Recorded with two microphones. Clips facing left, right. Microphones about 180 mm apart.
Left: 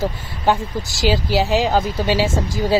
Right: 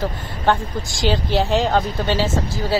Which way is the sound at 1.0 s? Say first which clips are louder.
Left 1 dB; 5° left (ahead or behind).